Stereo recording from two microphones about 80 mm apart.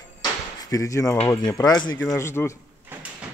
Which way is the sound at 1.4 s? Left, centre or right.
Left.